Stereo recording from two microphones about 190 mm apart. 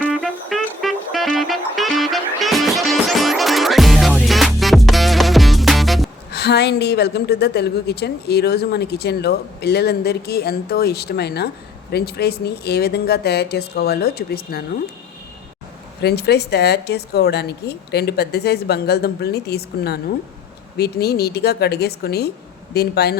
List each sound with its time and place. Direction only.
0.2 s music: centre (ahead or behind)
6.3 s a woman's voice: 60° left (ahead or behind)
16.0 s a woman's voice: 60° left (ahead or behind)